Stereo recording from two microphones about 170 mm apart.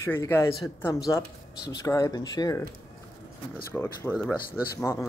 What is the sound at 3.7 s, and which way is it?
Speech, 15° left (ahead or behind).